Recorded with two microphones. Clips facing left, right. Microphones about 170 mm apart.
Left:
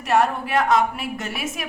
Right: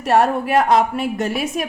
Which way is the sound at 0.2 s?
35° right (ahead or behind).